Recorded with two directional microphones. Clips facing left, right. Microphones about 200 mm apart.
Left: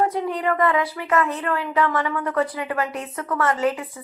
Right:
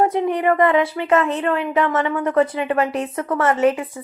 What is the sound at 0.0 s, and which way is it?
A woman's voice, 20° right (ahead or behind).